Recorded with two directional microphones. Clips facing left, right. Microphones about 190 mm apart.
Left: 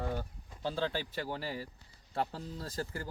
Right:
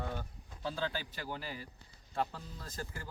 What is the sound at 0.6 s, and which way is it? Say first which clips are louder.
Speech: left 3 dB; 30° left (ahead or behind).